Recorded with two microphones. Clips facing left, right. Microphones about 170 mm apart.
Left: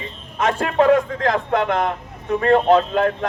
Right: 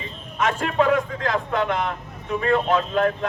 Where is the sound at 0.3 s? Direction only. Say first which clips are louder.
Left 3 dB; 40° left (ahead or behind).